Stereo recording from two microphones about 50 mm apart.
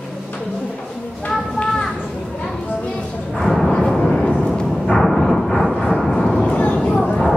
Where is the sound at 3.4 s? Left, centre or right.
Centre.